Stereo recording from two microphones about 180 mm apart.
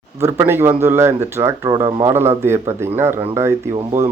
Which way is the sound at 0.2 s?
15° right (ahead or behind).